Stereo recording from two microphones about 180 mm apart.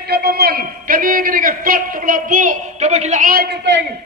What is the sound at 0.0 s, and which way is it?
A man's voice, 60° right (ahead or behind).